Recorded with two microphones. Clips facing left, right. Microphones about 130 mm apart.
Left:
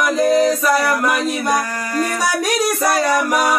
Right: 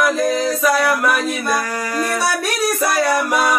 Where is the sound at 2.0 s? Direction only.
15° left (ahead or behind).